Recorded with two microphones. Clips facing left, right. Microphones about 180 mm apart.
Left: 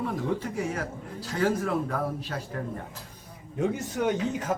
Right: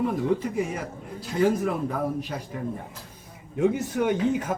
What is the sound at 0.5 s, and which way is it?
Speech, 15° right (ahead or behind).